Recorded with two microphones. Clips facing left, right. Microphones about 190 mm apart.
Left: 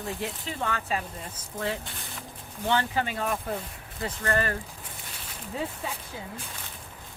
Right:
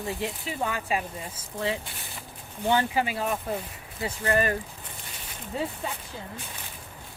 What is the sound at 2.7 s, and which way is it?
Speech, 10° right (ahead or behind).